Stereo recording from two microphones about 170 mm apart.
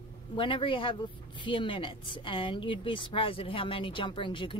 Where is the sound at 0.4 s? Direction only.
30° left (ahead or behind).